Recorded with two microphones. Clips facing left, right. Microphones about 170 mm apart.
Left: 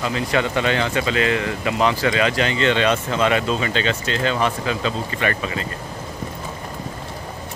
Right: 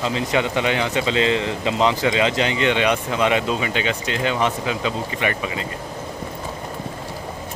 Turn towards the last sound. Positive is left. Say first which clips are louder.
# left 1 dB
turn(degrees=-15)  # may be behind; listen again after turning